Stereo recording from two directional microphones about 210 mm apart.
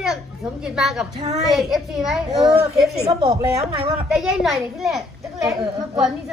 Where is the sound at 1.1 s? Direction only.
30° right (ahead or behind).